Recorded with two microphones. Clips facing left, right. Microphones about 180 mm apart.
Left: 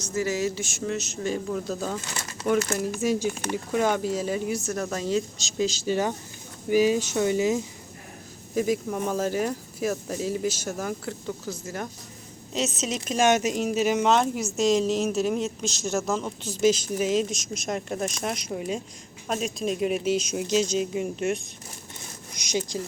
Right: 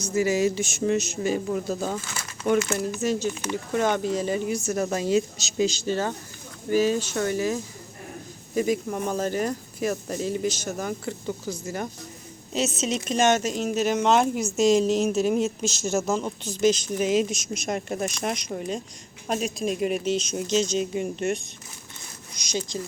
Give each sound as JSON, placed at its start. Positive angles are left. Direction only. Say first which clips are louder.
{"t": 0.0, "sound": "speech", "louder": "right 4 dB", "side_deg": -15}
{"t": 3.0, "sound": "speech", "louder": "even", "side_deg": 10}
{"t": 5.9, "sound": "speech", "louder": "left 1 dB", "side_deg": 10}
{"t": 8.5, "sound": "speech", "louder": "right 1 dB", "side_deg": 0}
{"t": 22.4, "sound": "speech", "louder": "left 1 dB", "side_deg": 15}